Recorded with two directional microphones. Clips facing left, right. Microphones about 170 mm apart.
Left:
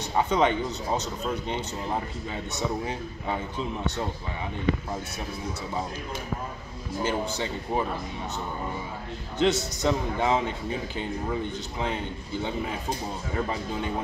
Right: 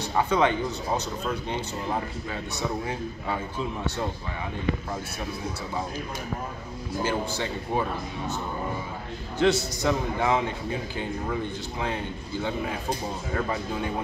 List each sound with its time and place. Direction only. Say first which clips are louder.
0.3 s a man's voice: right 1 dB; 20° left (ahead or behind)
7.1 s a man's voice: even; 20° left (ahead or behind)
9.4 s a man's voice: right 1 dB; 20° left (ahead or behind)